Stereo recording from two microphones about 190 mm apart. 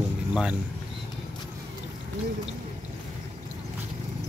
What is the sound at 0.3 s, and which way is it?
Speech, 5° right (ahead or behind).